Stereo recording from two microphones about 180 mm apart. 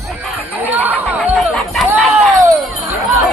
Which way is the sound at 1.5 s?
5° left (ahead or behind).